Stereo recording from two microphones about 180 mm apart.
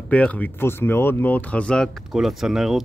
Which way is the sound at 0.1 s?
5° left (ahead or behind).